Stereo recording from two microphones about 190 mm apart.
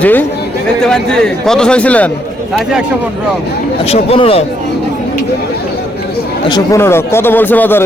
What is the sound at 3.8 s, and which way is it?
Speech, 30° left (ahead or behind).